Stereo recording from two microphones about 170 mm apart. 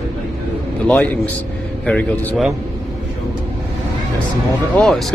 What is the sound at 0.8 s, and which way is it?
A man's voice, 10° left (ahead or behind).